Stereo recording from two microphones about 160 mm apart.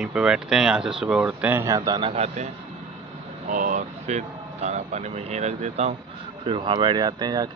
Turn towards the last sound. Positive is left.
turn(degrees=-25)  # may be behind; listen again after turning